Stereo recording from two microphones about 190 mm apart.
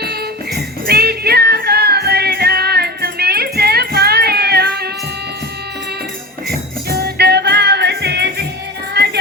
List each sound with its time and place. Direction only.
0.0 s music: 55° right (ahead or behind)
6.9 s music: 60° right (ahead or behind)